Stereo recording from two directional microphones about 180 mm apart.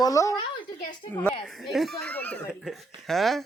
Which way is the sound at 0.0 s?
20° left (ahead or behind).